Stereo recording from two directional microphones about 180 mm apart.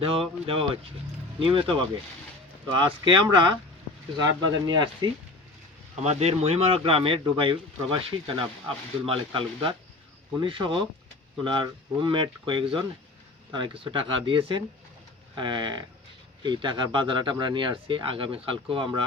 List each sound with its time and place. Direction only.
0.0 s speech: 30° right (ahead or behind)
4.3 s speech: 90° right
5.0 s speech: 25° right (ahead or behind)
6.0 s speech: 35° right (ahead or behind)